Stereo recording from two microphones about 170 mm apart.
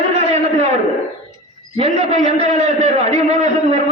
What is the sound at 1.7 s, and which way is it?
A man's voice, 40° right (ahead or behind).